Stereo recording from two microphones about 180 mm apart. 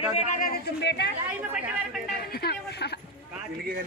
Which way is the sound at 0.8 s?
70° left (ahead or behind).